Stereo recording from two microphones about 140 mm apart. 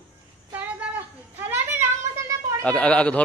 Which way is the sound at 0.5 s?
10° right (ahead or behind).